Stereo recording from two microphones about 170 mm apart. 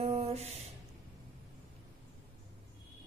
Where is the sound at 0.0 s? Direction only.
35° right (ahead or behind).